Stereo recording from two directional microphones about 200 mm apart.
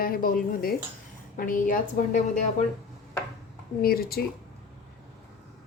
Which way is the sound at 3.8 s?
50° left (ahead or behind).